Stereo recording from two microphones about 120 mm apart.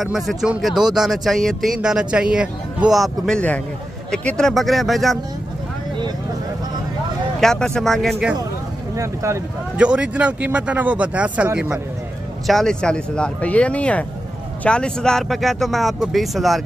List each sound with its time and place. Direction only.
0.0 s speech: centre (ahead or behind)
7.3 s speech: 5° left (ahead or behind)
8.9 s speech: 25° right (ahead or behind)
9.8 s speech: 10° right (ahead or behind)
12.4 s speech: 5° left (ahead or behind)